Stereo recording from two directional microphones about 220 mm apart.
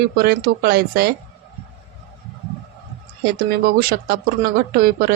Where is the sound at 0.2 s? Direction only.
45° right (ahead or behind).